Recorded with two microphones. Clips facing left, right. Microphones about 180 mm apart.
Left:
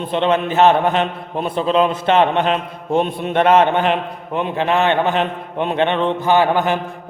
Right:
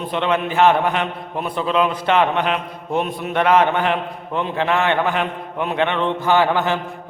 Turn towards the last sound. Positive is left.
turn(degrees=15)  # may be behind; listen again after turning